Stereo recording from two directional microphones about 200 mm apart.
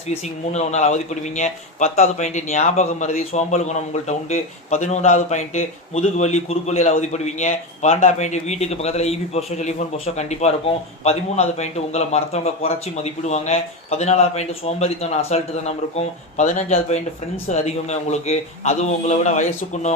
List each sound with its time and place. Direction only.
0.1 s speech: 35° left (ahead or behind)